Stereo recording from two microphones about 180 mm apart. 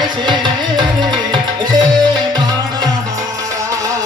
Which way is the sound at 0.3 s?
25° right (ahead or behind).